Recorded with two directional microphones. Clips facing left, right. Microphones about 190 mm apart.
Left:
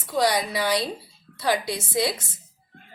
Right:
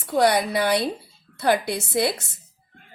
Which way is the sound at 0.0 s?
60° right (ahead or behind).